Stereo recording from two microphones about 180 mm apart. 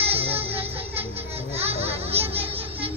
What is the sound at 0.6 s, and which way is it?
Music, 35° right (ahead or behind).